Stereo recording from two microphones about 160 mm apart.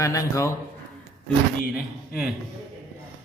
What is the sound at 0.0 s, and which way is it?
Speech, 20° left (ahead or behind).